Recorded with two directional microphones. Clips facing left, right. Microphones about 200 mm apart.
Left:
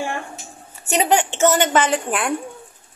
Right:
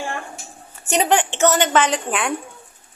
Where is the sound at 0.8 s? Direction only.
10° left (ahead or behind).